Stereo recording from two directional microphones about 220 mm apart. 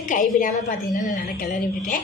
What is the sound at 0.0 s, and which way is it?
A woman's voice, 35° left (ahead or behind).